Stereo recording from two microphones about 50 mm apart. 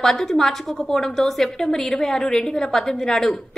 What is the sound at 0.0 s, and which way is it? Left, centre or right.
A woman's voice, centre.